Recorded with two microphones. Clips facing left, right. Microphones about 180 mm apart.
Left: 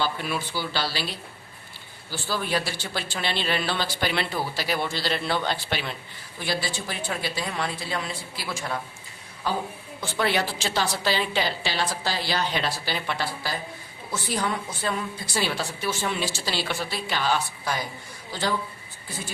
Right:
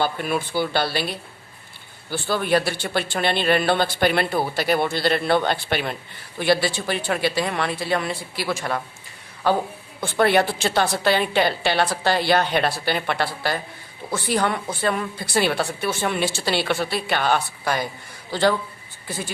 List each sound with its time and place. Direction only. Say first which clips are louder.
0.0 s speech: right 5 dB; 50° right (ahead or behind)
6.4 s speech: right 9 dB; 65° right (ahead or behind)
10.0 s a man's voice: right 7 dB; 55° right (ahead or behind)